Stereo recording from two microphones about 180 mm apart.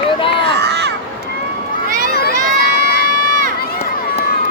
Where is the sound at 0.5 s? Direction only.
65° right (ahead or behind).